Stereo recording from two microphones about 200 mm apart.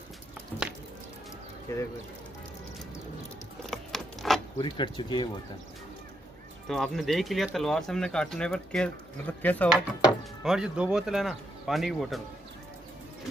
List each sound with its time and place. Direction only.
1.7 s speech: 15° left (ahead or behind)
3.7 s a sound: centre (ahead or behind)
4.6 s speech: 25° left (ahead or behind)
6.7 s speech: centre (ahead or behind)
10.0 s speech: 5° right (ahead or behind)